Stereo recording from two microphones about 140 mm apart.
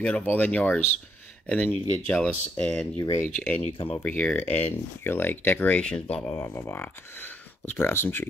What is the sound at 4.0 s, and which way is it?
Speech, 10° left (ahead or behind).